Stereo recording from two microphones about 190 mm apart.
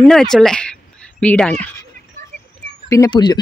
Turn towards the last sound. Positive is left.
turn(degrees=20)  # may be behind; listen again after turning